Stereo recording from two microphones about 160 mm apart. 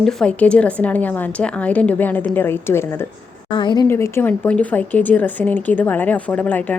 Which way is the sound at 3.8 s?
15° left (ahead or behind).